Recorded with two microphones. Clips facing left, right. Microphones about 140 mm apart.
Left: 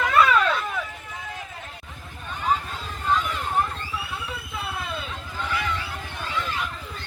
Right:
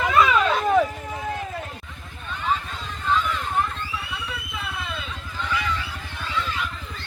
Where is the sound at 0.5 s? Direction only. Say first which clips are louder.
Right 9 dB; 45° right (ahead or behind).